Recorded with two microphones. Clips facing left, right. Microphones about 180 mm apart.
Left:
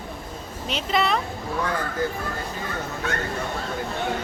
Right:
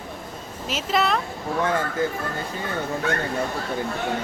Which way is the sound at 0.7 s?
Centre (ahead or behind).